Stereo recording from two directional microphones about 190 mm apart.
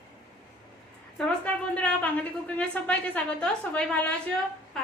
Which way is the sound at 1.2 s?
5° left (ahead or behind).